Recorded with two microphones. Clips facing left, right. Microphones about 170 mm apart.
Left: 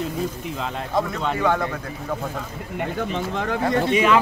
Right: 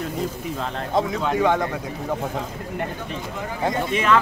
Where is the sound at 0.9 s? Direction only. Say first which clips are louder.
Right 2 dB; 15° right (ahead or behind).